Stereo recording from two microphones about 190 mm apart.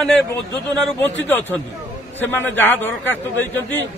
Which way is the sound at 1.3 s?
10° left (ahead or behind).